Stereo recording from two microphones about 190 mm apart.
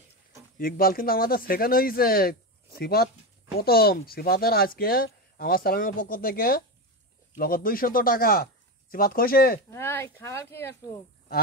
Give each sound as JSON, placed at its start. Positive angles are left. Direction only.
{"t": 0.6, "sound": "speech", "side_deg": 50}
{"t": 9.7, "sound": "speech", "side_deg": 10}